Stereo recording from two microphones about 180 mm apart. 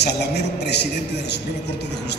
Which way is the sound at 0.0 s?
65° left (ahead or behind).